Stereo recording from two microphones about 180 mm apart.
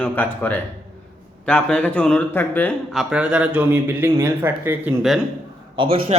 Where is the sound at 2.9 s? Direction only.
5° right (ahead or behind).